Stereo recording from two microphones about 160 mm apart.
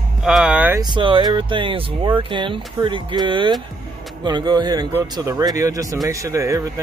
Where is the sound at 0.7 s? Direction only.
30° right (ahead or behind).